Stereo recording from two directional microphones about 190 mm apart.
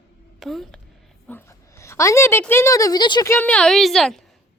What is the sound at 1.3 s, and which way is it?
A woman's voice, 15° left (ahead or behind).